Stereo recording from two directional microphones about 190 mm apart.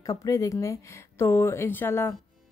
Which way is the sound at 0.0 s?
20° left (ahead or behind).